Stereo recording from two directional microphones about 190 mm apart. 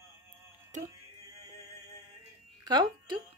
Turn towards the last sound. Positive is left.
turn(degrees=-25)  # may be behind; listen again after turning